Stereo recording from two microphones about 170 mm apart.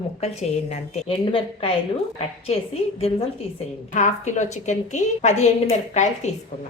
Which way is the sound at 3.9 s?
45° left (ahead or behind).